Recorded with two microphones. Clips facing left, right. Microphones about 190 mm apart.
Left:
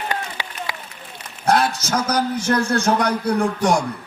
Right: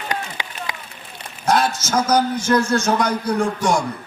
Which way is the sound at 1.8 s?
60° left (ahead or behind).